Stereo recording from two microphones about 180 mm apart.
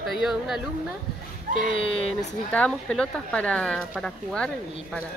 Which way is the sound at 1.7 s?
30° left (ahead or behind).